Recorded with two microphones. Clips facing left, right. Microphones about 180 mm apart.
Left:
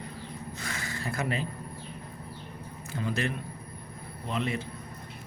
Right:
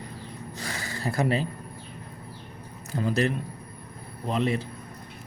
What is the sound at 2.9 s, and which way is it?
Speech, 40° right (ahead or behind).